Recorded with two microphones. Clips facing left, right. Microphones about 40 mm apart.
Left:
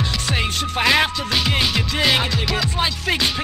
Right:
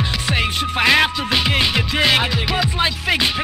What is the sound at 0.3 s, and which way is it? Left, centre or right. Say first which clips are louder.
Music: right 4 dB; centre.